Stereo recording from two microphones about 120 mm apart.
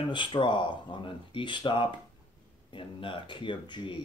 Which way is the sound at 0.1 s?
45° left (ahead or behind).